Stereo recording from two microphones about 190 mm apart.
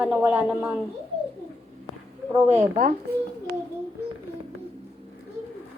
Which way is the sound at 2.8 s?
45° right (ahead or behind).